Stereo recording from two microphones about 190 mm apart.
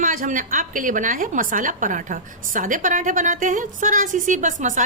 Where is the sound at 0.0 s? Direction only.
45° right (ahead or behind).